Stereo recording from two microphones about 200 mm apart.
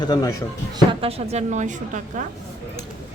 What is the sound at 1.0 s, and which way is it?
A woman's voice, 35° right (ahead or behind).